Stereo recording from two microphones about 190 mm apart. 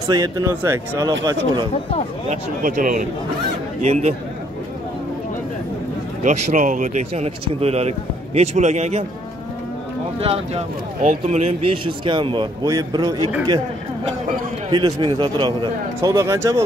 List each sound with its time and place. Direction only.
0.1 s speech: 20° right (ahead or behind)
2.2 s speech: 45° right (ahead or behind)
6.2 s speech: 40° right (ahead or behind)
10.2 s speech: 30° right (ahead or behind)
14.7 s speech: 25° right (ahead or behind)